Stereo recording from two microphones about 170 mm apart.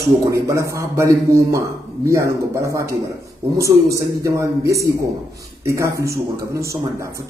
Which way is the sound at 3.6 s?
20° right (ahead or behind).